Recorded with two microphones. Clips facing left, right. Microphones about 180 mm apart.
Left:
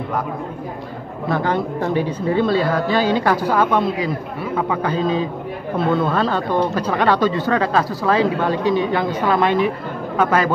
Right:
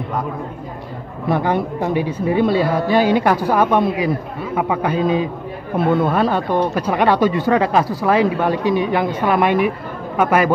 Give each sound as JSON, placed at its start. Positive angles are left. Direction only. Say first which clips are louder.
{"t": 1.3, "sound": "speech", "louder": "right 2 dB", "side_deg": -10}
{"t": 4.9, "sound": "a man's voice", "louder": "right 2 dB", "side_deg": 30}
{"t": 5.9, "sound": "speech", "louder": "right 2 dB", "side_deg": -10}